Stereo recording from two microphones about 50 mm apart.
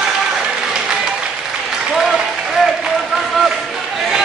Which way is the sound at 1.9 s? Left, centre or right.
Centre.